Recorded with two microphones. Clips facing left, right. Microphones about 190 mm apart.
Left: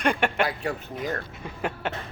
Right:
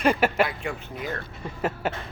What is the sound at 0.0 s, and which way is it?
Speech, 5° right (ahead or behind).